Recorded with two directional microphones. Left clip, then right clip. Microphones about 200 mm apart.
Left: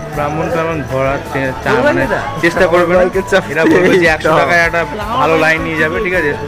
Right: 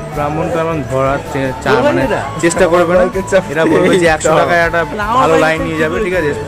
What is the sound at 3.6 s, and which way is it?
Speech, 10° left (ahead or behind).